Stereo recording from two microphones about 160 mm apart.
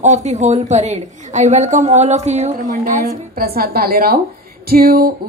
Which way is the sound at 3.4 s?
70° right (ahead or behind).